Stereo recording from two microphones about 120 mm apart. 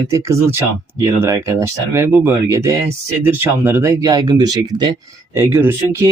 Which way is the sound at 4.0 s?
30° right (ahead or behind).